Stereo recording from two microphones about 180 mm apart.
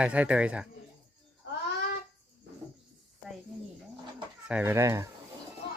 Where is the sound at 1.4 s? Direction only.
70° left (ahead or behind).